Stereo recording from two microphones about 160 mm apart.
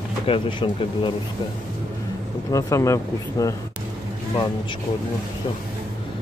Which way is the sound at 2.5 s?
20° left (ahead or behind).